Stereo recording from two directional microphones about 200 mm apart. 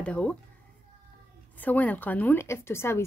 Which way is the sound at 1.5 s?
10° left (ahead or behind).